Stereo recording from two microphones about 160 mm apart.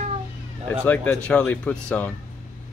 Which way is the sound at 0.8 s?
10° left (ahead or behind).